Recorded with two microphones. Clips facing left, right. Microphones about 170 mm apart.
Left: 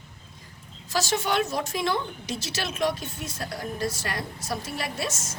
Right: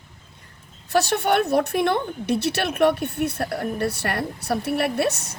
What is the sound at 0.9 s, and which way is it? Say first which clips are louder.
A woman's voice: right 6 dB; 60° right (ahead or behind).